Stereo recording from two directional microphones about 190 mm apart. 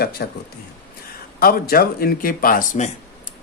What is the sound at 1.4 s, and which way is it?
Speech, 50° left (ahead or behind).